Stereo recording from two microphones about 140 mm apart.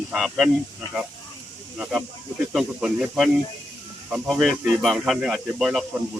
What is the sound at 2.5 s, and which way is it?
Speech, 5° right (ahead or behind).